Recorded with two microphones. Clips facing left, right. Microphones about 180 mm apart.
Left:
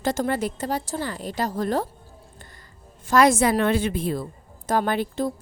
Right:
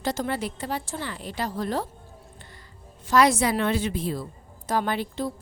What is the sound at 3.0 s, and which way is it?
A woman's voice, 50° left (ahead or behind).